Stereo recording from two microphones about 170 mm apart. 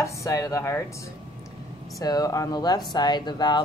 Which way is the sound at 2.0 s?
20° left (ahead or behind).